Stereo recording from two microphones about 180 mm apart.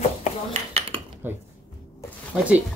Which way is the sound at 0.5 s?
35° right (ahead or behind).